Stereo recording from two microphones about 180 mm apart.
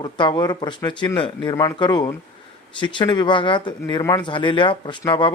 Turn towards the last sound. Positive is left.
turn(degrees=25)  # may be behind; listen again after turning